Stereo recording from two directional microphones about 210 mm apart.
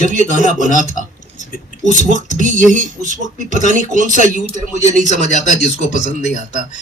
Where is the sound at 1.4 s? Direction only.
35° left (ahead or behind).